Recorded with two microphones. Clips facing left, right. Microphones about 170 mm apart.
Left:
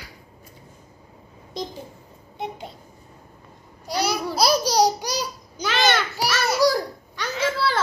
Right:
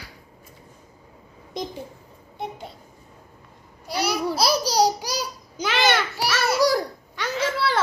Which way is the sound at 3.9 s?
5° right (ahead or behind).